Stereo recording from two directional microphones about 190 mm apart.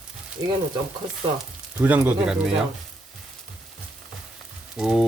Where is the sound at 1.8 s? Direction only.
5° right (ahead or behind).